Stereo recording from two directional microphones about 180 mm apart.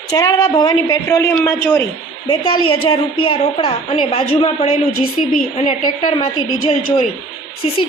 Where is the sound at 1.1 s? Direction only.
10° left (ahead or behind).